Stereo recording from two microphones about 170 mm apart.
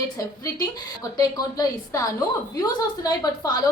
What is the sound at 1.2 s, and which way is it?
A woman's voice, 20° left (ahead or behind).